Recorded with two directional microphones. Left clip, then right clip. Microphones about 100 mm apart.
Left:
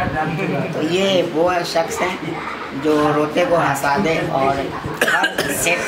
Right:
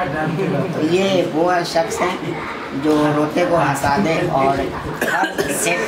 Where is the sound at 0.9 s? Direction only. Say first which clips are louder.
Even; centre (ahead or behind).